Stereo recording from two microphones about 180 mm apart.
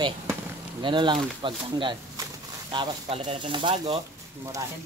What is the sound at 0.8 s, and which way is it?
Speech, 25° right (ahead or behind).